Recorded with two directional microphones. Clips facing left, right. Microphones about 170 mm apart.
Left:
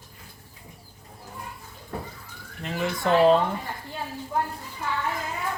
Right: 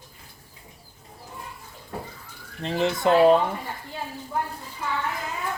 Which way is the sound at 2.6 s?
30° right (ahead or behind).